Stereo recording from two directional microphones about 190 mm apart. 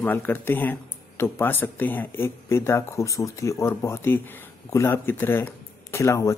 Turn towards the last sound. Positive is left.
turn(degrees=15)  # may be behind; listen again after turning